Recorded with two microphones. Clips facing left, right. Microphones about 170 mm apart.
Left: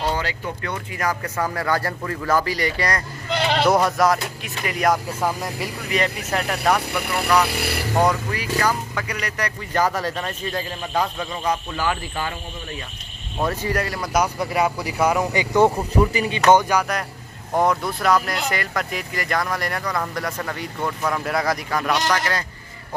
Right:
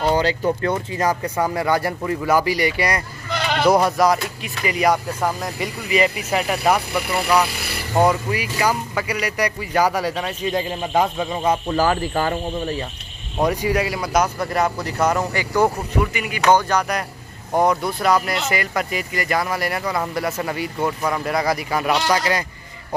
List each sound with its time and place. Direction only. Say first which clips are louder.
0.1 s speech: right 8 dB; 35° right (ahead or behind)
1.2 s speech: right 4 dB; 15° right (ahead or behind)
3.3 s sheep: left 1 dB; 25° left (ahead or behind)
3.6 s speech: right 3 dB; centre (ahead or behind)
8.0 s speech: right 4 dB; 10° right (ahead or behind); by 12.4 s 45° right (ahead or behind)
13.4 s speech: right 4 dB; 15° right (ahead or behind)
14.4 s speech: right 1 dB; 10° left (ahead or behind)
15.5 s speech: left 2 dB; 25° left (ahead or behind)
16.1 s speech: left 4 dB; 35° left (ahead or behind)
16.4 s speech: left 1 dB; 20° left (ahead or behind)
16.7 s speech: right 1 dB; centre (ahead or behind)
21.9 s speech: right 3 dB; 20° right (ahead or behind)